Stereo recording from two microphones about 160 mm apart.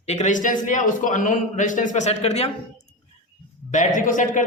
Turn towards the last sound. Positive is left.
turn(degrees=55)  # may be behind; listen again after turning